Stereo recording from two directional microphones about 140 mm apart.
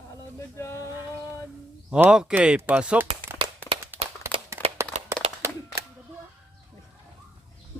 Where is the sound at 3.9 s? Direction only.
15° right (ahead or behind).